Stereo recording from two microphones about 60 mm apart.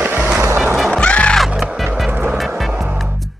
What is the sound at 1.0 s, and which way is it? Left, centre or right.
Music, centre.